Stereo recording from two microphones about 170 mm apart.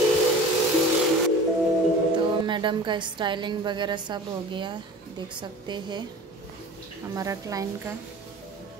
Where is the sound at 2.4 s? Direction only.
30° right (ahead or behind).